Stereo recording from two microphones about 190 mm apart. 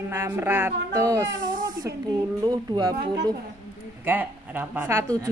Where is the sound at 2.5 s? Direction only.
20° right (ahead or behind).